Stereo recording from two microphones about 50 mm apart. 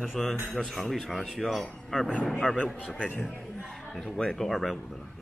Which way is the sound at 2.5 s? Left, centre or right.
Left.